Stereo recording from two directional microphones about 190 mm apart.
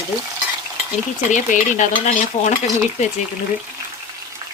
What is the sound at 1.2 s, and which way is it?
Stir, 40° left (ahead or behind).